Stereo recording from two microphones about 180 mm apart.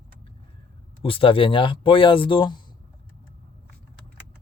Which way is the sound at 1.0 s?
30° left (ahead or behind).